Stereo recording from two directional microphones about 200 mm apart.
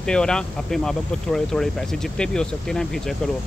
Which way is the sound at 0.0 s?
5° left (ahead or behind).